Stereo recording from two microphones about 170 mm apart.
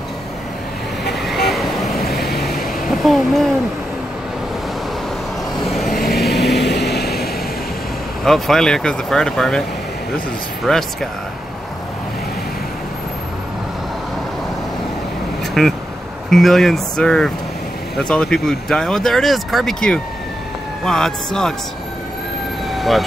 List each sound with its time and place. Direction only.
1.2 s vehicle: centre (ahead or behind)
5.6 s vehicle: centre (ahead or behind)
6.3 s vehicle: 80° left
8.2 s speech: centre (ahead or behind)
10.6 s speech: centre (ahead or behind)
15.6 s speech: 5° left (ahead or behind)
22.8 s speech: centre (ahead or behind)